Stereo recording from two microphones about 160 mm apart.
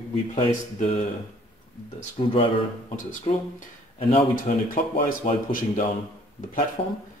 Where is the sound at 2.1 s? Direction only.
35° left (ahead or behind).